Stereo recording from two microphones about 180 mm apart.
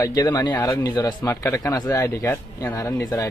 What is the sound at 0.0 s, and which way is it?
Speech, 20° left (ahead or behind).